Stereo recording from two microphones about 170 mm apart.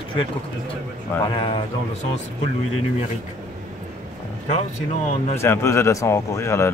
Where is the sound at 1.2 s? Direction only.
30° left (ahead or behind).